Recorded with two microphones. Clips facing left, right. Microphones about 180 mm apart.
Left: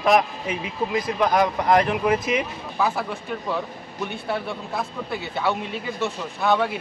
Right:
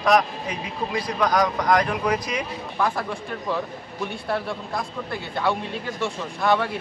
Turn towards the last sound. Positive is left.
turn(degrees=0)  # may be behind; listen again after turning